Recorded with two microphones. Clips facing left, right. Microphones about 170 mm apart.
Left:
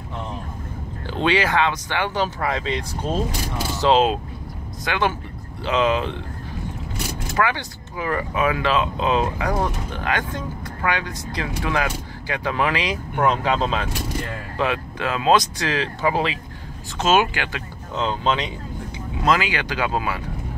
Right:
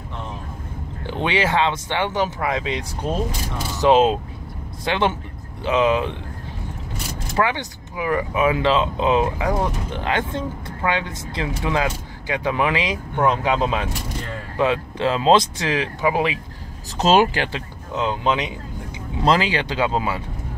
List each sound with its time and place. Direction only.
1.0 s speech: 20° right (ahead or behind)
7.3 s speech: 20° right (ahead or behind)
17.0 s speech: 35° right (ahead or behind)
17.9 s speech: 10° right (ahead or behind)
19.2 s speech: 30° right (ahead or behind)